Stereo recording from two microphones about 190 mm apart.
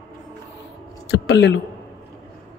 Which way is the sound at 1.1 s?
80° left.